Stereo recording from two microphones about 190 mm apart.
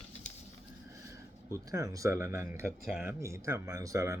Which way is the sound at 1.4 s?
15° right (ahead or behind).